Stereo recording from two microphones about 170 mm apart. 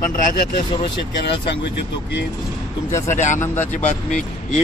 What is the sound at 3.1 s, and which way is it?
Speech, 45° left (ahead or behind).